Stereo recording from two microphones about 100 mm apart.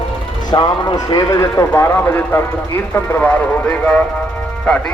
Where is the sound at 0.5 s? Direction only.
50° left (ahead or behind).